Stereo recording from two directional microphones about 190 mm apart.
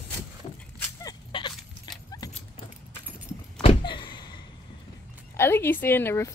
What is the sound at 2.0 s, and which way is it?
Dog, 20° left (ahead or behind).